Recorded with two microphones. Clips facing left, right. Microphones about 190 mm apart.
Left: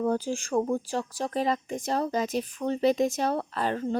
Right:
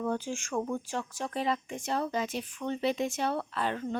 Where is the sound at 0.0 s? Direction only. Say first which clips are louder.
Left 5 dB; 35° left (ahead or behind).